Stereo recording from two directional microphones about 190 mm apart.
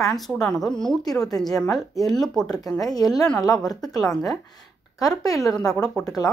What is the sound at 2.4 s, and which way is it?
Speech, 20° left (ahead or behind).